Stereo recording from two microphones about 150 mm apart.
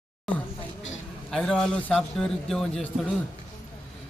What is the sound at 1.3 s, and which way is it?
A man's voice, 5° left (ahead or behind).